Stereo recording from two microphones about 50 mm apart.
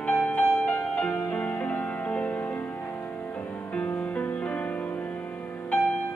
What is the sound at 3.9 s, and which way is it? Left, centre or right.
Music, left.